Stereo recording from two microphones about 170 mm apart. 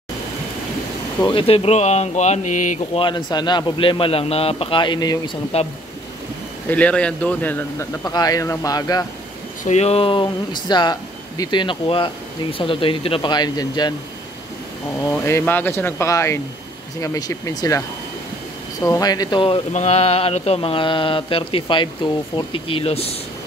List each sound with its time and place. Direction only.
1.2 s speech: 30° left (ahead or behind)
6.7 s speech: 5° left (ahead or behind)
8.0 s speech: 20° left (ahead or behind)
9.7 s speech: 40° left (ahead or behind)
15.0 s speech: 15° left (ahead or behind); by 23.1 s 35° left (ahead or behind)